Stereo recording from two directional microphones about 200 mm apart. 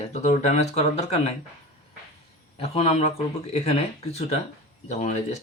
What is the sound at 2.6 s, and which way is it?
Speech, 30° left (ahead or behind).